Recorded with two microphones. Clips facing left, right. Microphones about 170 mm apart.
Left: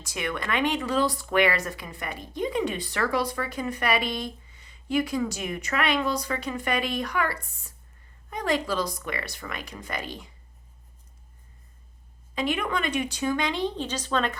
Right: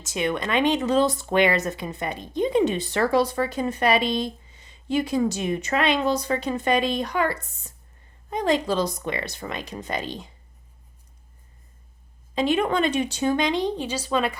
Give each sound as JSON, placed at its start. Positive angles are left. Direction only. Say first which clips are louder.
{"t": 0.0, "sound": "speech", "louder": "right 6 dB", "side_deg": -20}
{"t": 12.3, "sound": "speech", "louder": "right 6 dB", "side_deg": -30}